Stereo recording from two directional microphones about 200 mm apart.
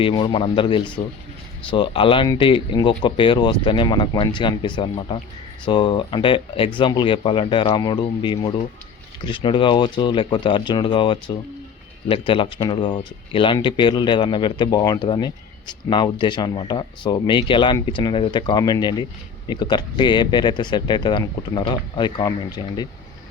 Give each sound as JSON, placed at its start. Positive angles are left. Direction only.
{"t": 0.0, "sound": "speech", "side_deg": 25}